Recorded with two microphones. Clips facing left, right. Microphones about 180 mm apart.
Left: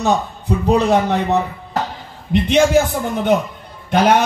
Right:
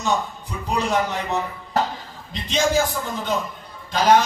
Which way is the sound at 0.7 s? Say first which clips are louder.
Left 7 dB; 65° left (ahead or behind).